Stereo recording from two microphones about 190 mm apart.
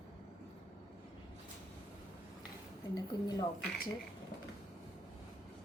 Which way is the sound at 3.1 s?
20° left (ahead or behind).